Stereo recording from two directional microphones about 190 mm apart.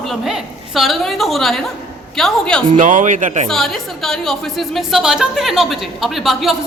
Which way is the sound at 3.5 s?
Centre (ahead or behind).